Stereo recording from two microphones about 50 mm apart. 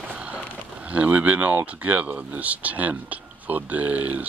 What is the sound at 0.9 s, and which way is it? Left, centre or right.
Speech, right.